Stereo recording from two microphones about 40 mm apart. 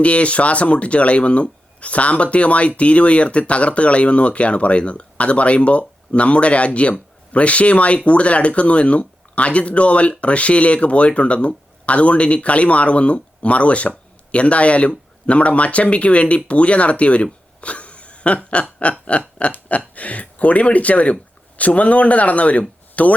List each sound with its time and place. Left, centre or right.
0.0 s speech: left
17.6 s a sound: left
20.0 s speech: left